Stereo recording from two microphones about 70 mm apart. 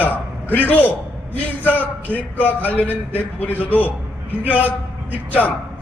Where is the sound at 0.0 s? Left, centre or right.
Left.